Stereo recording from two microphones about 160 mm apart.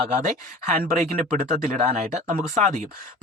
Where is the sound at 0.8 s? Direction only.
55° right (ahead or behind).